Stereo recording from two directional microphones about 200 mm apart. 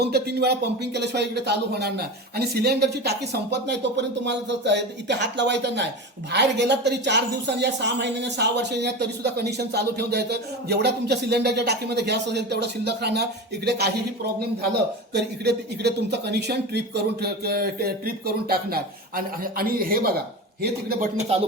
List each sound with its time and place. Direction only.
0.0 s speech: 55° right (ahead or behind)